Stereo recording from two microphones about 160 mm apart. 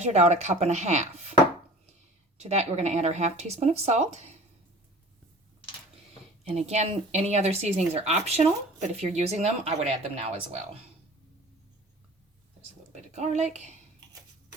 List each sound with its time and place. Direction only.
0.0 s speech: 45° right (ahead or behind)
2.4 s speech: 45° right (ahead or behind)
6.7 s speech: 45° right (ahead or behind)
13.1 s speech: 45° right (ahead or behind)